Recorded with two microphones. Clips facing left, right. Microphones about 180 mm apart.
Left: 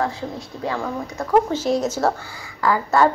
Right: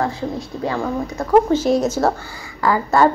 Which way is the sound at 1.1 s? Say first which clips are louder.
Right 4 dB; 15° right (ahead or behind).